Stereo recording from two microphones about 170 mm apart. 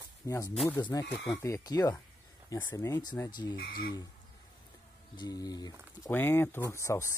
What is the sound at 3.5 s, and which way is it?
Speech, 60° left (ahead or behind).